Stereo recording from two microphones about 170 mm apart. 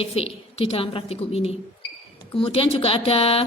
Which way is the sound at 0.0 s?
35° left (ahead or behind).